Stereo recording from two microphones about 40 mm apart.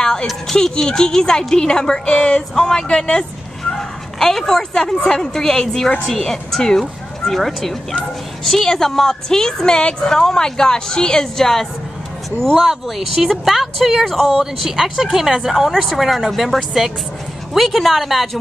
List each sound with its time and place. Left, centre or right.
0.0 s a sound: centre
0.5 s speech: centre
12.6 s speech: centre
14.4 s speech: centre